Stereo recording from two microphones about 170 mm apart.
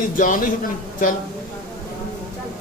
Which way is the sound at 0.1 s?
50° left (ahead or behind).